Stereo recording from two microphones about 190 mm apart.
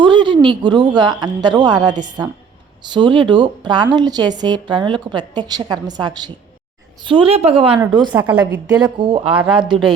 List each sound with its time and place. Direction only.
0.0 s a sound: 25° right (ahead or behind)
0.3 s a woman's voice: 25° right (ahead or behind)
8.1 s a woman's voice: 10° right (ahead or behind)
8.6 s a woman's voice: 25° right (ahead or behind)
9.3 s speech: 5° right (ahead or behind)
9.6 s a woman's voice: 25° right (ahead or behind)